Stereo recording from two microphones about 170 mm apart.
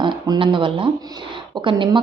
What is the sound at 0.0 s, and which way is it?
A woman's voice, 30° right (ahead or behind).